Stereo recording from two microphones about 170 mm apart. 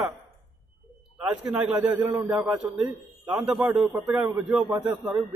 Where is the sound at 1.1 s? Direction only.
5° right (ahead or behind).